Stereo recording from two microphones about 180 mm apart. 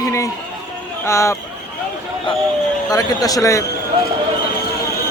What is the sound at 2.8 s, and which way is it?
Speech, 20° left (ahead or behind).